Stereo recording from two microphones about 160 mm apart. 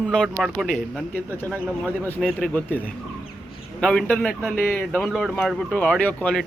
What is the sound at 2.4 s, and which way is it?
Speech, 10° left (ahead or behind).